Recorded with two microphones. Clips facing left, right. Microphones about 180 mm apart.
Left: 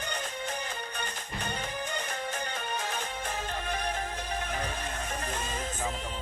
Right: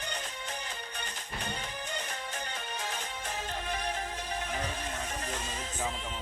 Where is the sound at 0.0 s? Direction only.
50° left (ahead or behind).